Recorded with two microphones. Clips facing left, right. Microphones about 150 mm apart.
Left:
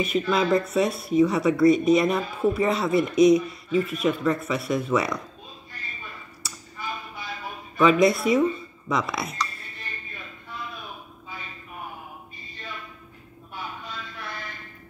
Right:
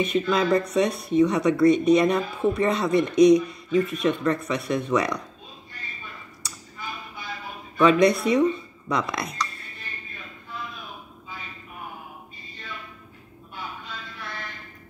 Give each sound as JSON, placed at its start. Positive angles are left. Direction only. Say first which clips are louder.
{"t": 0.0, "sound": "speech", "louder": "right 1 dB", "side_deg": 5}
{"t": 7.7, "sound": "speech", "louder": "right 1 dB", "side_deg": 5}